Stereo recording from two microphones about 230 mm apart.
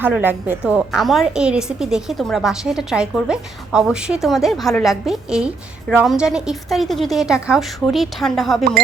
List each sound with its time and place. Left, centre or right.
0.0 s a woman's voice: centre